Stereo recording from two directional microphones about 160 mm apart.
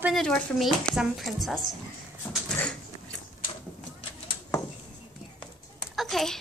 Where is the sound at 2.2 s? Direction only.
10° left (ahead or behind).